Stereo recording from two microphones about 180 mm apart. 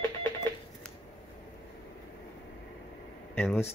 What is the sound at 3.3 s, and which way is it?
Speech, 10° left (ahead or behind).